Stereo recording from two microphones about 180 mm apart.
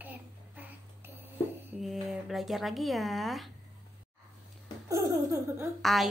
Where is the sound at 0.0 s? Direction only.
10° right (ahead or behind).